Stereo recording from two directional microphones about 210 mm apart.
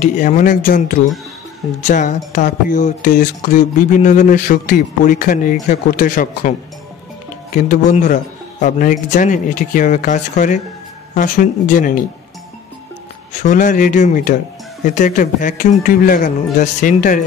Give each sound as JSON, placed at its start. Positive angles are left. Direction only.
{"t": 0.0, "sound": "speech", "side_deg": 35}
{"t": 7.5, "sound": "speech", "side_deg": 35}
{"t": 13.3, "sound": "speech", "side_deg": 35}